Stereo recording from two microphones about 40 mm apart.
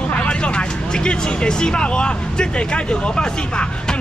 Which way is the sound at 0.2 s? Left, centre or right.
Left.